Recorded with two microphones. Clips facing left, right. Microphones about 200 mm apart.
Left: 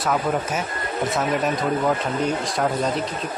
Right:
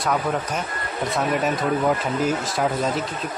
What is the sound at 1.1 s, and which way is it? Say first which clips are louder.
Speech: right 1 dB; centre (ahead or behind).